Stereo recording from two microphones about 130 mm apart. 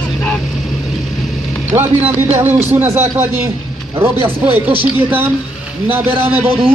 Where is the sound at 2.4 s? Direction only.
15° right (ahead or behind).